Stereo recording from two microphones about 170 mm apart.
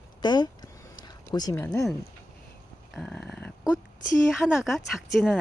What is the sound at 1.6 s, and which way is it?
Speech, 5° left (ahead or behind).